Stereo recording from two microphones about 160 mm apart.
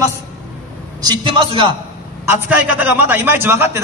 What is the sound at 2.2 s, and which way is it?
A man's voice, 15° right (ahead or behind).